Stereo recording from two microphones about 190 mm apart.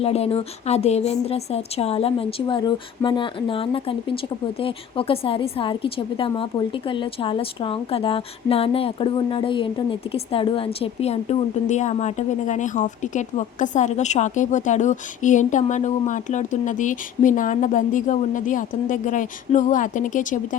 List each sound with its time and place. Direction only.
0.0 s a woman's voice: 30° left (ahead or behind)